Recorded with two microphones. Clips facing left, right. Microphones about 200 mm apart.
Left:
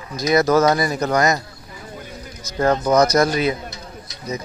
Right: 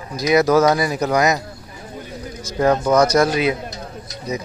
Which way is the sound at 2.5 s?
30° right (ahead or behind).